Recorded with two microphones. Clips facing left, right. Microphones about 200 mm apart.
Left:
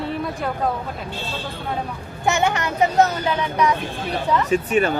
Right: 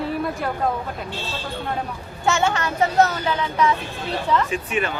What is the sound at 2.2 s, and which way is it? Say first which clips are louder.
A child's voice: left 1 dB; 15° left (ahead or behind).